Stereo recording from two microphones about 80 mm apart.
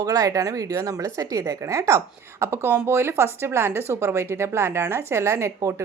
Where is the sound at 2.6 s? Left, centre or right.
Right.